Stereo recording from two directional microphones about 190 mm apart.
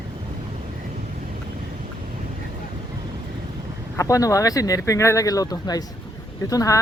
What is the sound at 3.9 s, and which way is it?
Speech, 15° left (ahead or behind).